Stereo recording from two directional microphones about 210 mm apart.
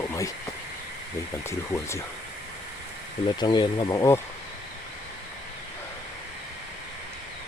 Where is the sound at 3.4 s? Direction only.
20° left (ahead or behind).